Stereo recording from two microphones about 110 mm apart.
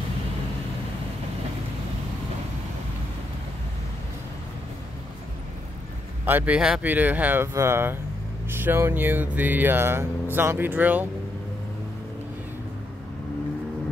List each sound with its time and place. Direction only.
6.2 s speech: 15° right (ahead or behind)